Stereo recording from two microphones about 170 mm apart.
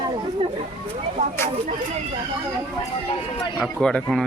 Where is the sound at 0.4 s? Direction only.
30° right (ahead or behind).